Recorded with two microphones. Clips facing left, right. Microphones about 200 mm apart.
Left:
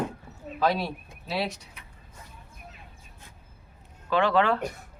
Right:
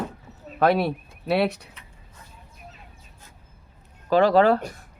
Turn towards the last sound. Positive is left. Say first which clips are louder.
# right 6 dB
turn(degrees=-40)  # may be behind; listen again after turning